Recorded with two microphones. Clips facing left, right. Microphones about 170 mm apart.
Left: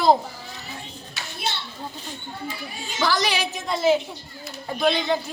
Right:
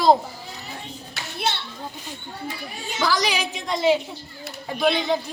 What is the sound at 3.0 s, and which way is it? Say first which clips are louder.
A woman's voice: even; 5° left (ahead or behind).